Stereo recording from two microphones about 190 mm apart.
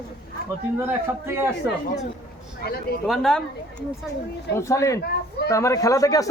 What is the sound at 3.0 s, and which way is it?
Speech, centre (ahead or behind).